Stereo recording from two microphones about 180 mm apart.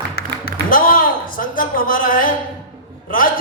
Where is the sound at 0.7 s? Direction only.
50° left (ahead or behind).